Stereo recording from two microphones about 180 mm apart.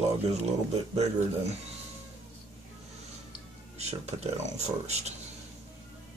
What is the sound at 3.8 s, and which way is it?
Speech, 35° right (ahead or behind).